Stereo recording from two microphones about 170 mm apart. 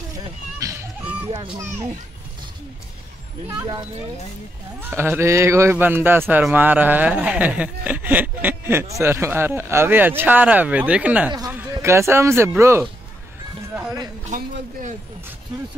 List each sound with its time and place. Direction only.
0.1 s a sound: 20° right (ahead or behind)
4.7 s a man's voice: 15° right (ahead or behind)
14.2 s speech: 45° right (ahead or behind)